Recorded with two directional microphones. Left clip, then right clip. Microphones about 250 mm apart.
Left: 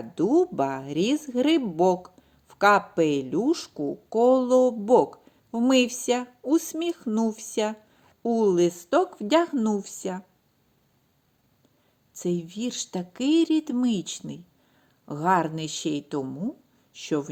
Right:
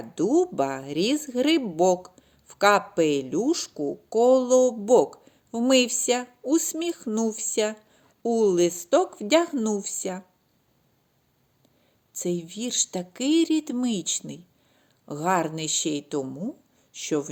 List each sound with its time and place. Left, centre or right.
0.0 s speech: left
12.1 s speech: left